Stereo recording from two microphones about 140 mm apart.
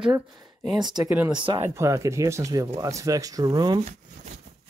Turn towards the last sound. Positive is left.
turn(degrees=-30)  # may be behind; listen again after turning